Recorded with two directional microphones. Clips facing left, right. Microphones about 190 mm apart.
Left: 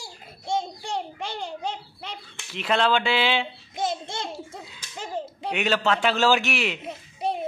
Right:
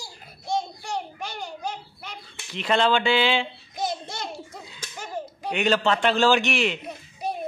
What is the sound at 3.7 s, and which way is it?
Speech, 25° left (ahead or behind).